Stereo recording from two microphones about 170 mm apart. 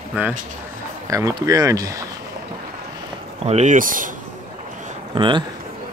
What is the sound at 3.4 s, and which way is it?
Speech, 40° right (ahead or behind).